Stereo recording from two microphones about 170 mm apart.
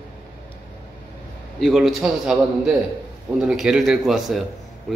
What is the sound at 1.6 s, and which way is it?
A man's voice, centre (ahead or behind).